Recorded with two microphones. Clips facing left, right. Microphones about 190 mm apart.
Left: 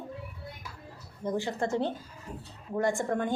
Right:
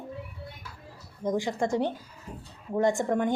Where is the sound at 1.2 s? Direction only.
15° right (ahead or behind).